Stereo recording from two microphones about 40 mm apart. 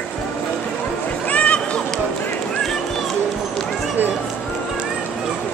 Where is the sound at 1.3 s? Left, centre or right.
Left.